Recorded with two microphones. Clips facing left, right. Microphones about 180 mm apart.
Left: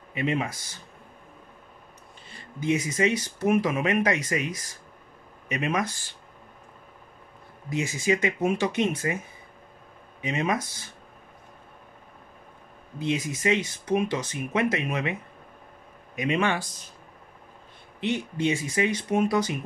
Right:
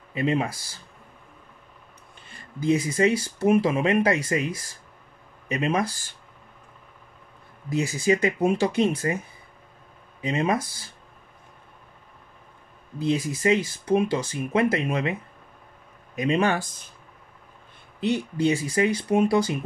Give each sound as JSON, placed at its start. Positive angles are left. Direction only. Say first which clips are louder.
{"t": 0.1, "sound": "speech", "louder": "right 3 dB", "side_deg": -35}
{"t": 2.6, "sound": "speech", "louder": "right 3 dB", "side_deg": -35}
{"t": 7.7, "sound": "speech", "louder": "right 3 dB", "side_deg": -35}
{"t": 10.2, "sound": "speech", "louder": "right 3 dB", "side_deg": -30}
{"t": 13.0, "sound": "speech", "louder": "right 3 dB", "side_deg": -35}
{"t": 16.2, "sound": "speech", "louder": "right 3 dB", "side_deg": -35}
{"t": 18.0, "sound": "speech", "louder": "right 3 dB", "side_deg": -35}